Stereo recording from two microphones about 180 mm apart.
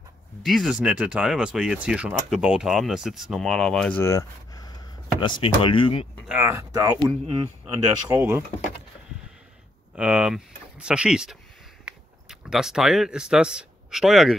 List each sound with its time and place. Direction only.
0.4 s speech: centre (ahead or behind); by 6.0 s 30° left (ahead or behind)
6.2 s speech: 10° right (ahead or behind)
9.9 s speech: 5° right (ahead or behind)